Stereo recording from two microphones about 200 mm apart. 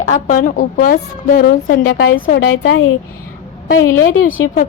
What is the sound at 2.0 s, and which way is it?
Speech, 60° left (ahead or behind).